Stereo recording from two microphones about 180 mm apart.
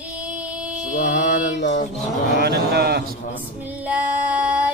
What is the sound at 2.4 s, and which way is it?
Speech, 65° right (ahead or behind).